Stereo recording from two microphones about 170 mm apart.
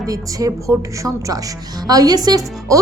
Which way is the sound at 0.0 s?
20° right (ahead or behind).